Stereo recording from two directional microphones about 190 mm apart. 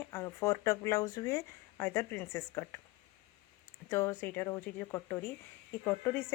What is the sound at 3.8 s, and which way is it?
Speech, 10° left (ahead or behind).